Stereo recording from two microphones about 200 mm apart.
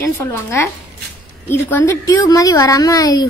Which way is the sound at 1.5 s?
15° left (ahead or behind).